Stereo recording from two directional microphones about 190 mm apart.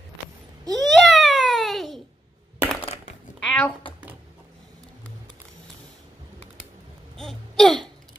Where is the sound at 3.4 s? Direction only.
5° left (ahead or behind).